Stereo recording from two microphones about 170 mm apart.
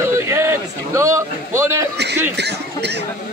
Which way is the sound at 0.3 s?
15° right (ahead or behind).